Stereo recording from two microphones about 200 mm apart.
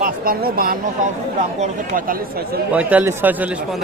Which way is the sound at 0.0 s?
50° right (ahead or behind).